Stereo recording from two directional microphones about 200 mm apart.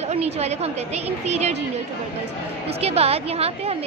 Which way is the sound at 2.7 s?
30° right (ahead or behind).